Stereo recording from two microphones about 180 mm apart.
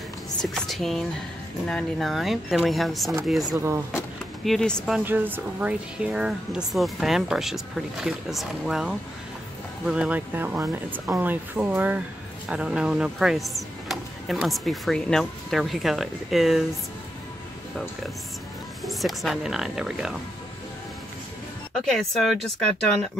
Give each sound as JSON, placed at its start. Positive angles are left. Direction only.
{"t": 0.4, "sound": "speech", "side_deg": 0}
{"t": 3.4, "sound": "speech", "side_deg": -15}
{"t": 4.5, "sound": "speech", "side_deg": 0}
{"t": 18.9, "sound": "speech", "side_deg": 0}
{"t": 21.8, "sound": "speech", "side_deg": 0}